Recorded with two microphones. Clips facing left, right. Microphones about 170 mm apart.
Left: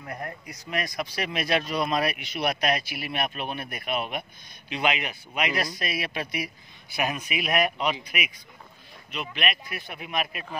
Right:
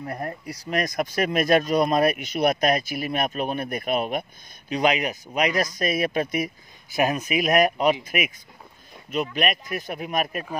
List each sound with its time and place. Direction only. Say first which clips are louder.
0.0 s speech: right 5 dB; 35° right (ahead or behind)